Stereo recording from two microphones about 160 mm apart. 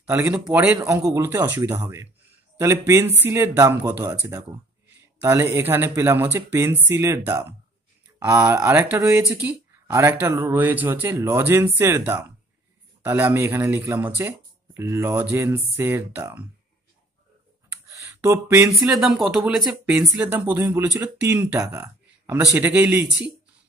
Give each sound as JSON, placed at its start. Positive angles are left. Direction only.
{"t": 0.0, "sound": "speech", "side_deg": -15}
{"t": 3.3, "sound": "speech", "side_deg": -15}
{"t": 17.9, "sound": "a sound", "side_deg": -15}
{"t": 18.7, "sound": "speech", "side_deg": 0}